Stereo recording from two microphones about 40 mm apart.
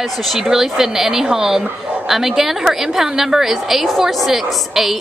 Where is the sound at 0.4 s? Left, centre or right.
Centre.